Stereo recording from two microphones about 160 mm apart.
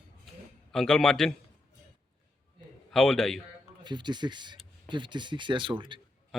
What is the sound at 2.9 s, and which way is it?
Speech, 5° left (ahead or behind).